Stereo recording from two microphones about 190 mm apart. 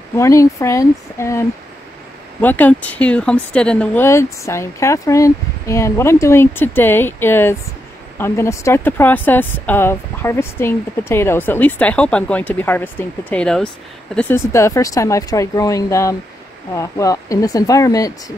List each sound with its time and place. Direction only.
0.1 s speech: 15° left (ahead or behind)
2.4 s speech: 10° left (ahead or behind)